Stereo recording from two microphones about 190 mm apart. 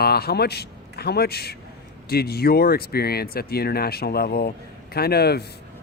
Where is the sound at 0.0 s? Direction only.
55° left (ahead or behind).